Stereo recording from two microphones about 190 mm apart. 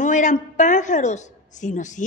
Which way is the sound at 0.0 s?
40° left (ahead or behind).